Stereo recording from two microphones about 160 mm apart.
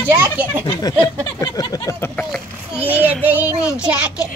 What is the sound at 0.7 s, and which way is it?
Speech, 25° left (ahead or behind).